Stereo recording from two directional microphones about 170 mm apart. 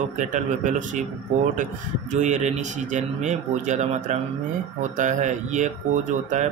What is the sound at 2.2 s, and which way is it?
Speech, 45° right (ahead or behind).